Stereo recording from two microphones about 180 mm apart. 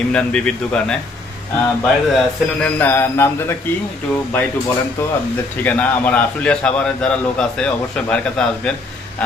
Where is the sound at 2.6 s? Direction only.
10° left (ahead or behind).